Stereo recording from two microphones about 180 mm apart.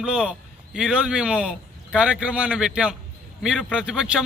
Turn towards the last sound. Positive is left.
turn(degrees=-5)  # may be behind; listen again after turning